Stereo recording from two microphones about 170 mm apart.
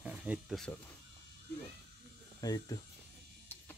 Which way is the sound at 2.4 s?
20° left (ahead or behind).